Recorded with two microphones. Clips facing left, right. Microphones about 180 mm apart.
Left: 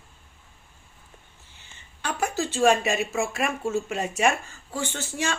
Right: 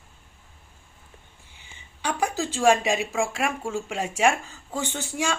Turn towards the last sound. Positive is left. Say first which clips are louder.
# right 1 dB
turn(degrees=-15)  # may be behind; listen again after turning